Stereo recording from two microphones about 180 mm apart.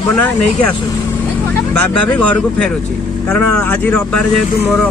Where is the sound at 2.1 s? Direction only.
5° left (ahead or behind).